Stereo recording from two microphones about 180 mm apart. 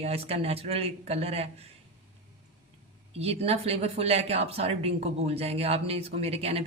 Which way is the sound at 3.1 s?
35° right (ahead or behind).